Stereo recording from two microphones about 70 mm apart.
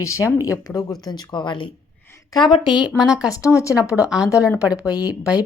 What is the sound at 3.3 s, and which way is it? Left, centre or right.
Speech, left.